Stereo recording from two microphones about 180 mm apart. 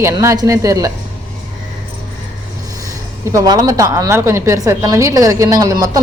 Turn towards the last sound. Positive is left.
turn(degrees=-20)  # may be behind; listen again after turning